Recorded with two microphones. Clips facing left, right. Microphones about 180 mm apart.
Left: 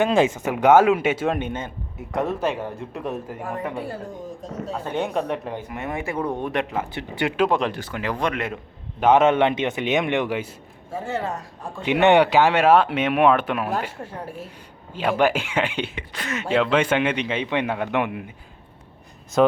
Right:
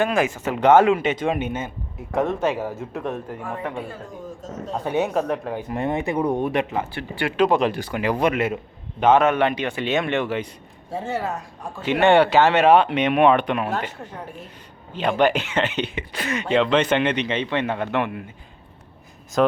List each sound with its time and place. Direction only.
0.0 s speech: 25° left (ahead or behind); by 1.4 s 5° left (ahead or behind)
1.4 s a man's voice: 10° right (ahead or behind)
4.9 s speech: 5° right (ahead or behind)
5.7 s speech: 30° right (ahead or behind)
6.4 s a man's voice: centre (ahead or behind)
6.9 s speech: 20° left (ahead or behind)
7.3 s a man's voice: centre (ahead or behind)
7.8 s speech: 15° right (ahead or behind)
9.0 s speech: 10° left (ahead or behind)
9.2 s speech: 25° left (ahead or behind)
11.2 s a man's voice: 5° right (ahead or behind)
11.9 s speech: 15° left (ahead or behind)
16.0 s a man's voice: 5° right (ahead or behind); by 18.3 s 15° left (ahead or behind)
19.4 s speech: centre (ahead or behind)